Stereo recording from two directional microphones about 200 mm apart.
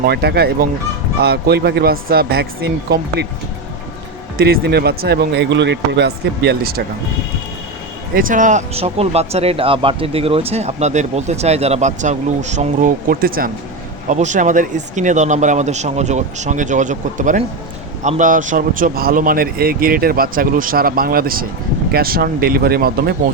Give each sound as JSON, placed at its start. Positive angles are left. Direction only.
{"t": 0.0, "sound": "a man's voice", "side_deg": -55}
{"t": 4.4, "sound": "speech", "side_deg": -55}
{"t": 8.1, "sound": "a man's voice", "side_deg": -40}